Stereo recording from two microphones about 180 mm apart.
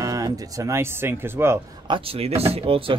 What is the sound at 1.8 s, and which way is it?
Speech, 30° right (ahead or behind).